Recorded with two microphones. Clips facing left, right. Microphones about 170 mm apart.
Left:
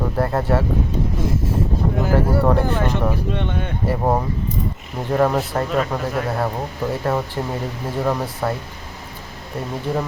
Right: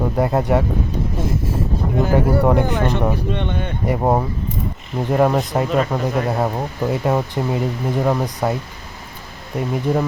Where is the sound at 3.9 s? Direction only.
10° right (ahead or behind).